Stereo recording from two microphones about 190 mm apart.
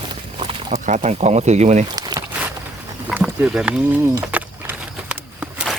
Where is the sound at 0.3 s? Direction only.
30° right (ahead or behind).